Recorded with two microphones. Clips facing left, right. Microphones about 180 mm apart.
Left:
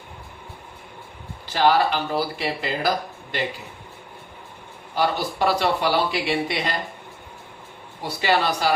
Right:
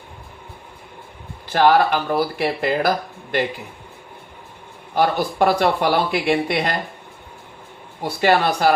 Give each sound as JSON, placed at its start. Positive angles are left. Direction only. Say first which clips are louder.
{"t": 1.5, "sound": "speech", "louder": "right 4 dB", "side_deg": -55}
{"t": 4.9, "sound": "speech", "louder": "right 5 dB", "side_deg": -50}
{"t": 8.0, "sound": "speech", "louder": "right 4 dB", "side_deg": -50}